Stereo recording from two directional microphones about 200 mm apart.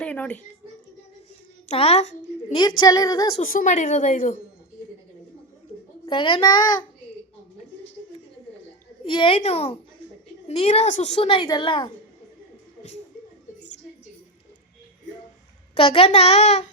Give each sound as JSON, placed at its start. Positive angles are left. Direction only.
{"t": 0.0, "sound": "speech", "side_deg": 5}
{"t": 1.6, "sound": "a woman's voice", "side_deg": 30}
{"t": 2.8, "sound": "a woman's voice", "side_deg": 20}
{"t": 3.3, "sound": "speech", "side_deg": 40}
{"t": 6.1, "sound": "a woman's voice", "side_deg": 25}
{"t": 9.0, "sound": "a woman's voice", "side_deg": 25}
{"t": 15.7, "sound": "speech", "side_deg": 30}